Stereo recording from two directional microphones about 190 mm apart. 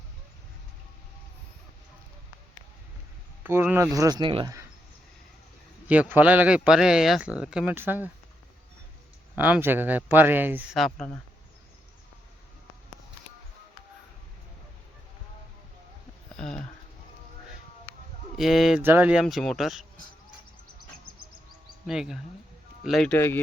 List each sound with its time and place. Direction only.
3.4 s speech: 10° right (ahead or behind)
5.9 s speech: 10° right (ahead or behind)
9.3 s speech: 10° right (ahead or behind)
16.3 s a sound: 5° left (ahead or behind)
18.3 s speech: centre (ahead or behind)
21.8 s speech: 5° right (ahead or behind)